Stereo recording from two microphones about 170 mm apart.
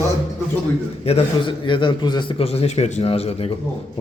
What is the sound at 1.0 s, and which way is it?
A man's voice, 35° left (ahead or behind).